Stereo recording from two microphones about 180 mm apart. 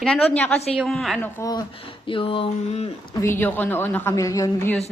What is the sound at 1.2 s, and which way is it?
Speech, 20° left (ahead or behind).